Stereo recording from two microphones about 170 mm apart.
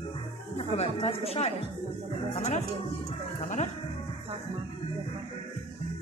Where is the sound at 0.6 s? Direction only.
35° left (ahead or behind).